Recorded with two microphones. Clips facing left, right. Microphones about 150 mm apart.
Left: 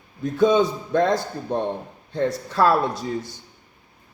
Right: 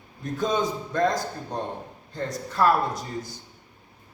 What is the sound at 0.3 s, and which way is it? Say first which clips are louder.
A man's voice: left 8 dB; 65° left (ahead or behind).